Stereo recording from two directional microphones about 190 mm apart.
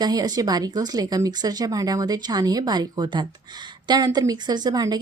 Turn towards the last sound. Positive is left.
turn(degrees=-20)  # may be behind; listen again after turning